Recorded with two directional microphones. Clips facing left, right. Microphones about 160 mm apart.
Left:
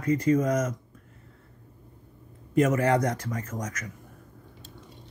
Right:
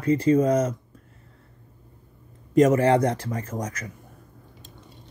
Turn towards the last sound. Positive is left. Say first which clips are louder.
# right 3 dB
turn(degrees=-30)  # may be behind; listen again after turning